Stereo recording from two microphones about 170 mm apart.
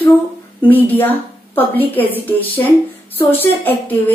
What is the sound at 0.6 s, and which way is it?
A woman's voice, 10° left (ahead or behind).